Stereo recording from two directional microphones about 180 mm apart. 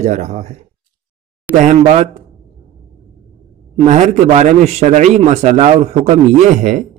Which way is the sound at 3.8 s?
40° right (ahead or behind).